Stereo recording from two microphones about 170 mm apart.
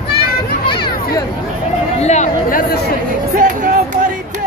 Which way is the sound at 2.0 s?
40° left (ahead or behind).